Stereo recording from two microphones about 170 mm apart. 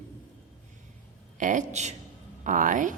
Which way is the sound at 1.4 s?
50° right (ahead or behind).